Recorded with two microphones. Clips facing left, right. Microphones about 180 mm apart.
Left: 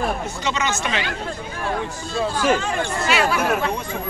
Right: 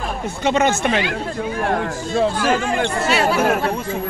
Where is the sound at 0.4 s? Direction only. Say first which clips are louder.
Right 12 dB; 55° right (ahead or behind).